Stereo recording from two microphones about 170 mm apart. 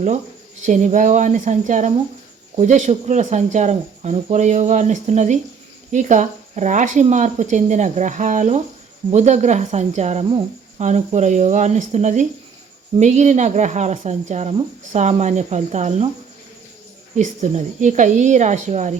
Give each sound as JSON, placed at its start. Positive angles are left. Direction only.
{"t": 0.6, "sound": "speech", "side_deg": -45}
{"t": 17.2, "sound": "speech", "side_deg": -45}